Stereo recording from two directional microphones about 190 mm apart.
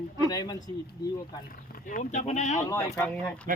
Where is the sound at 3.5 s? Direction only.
45° right (ahead or behind).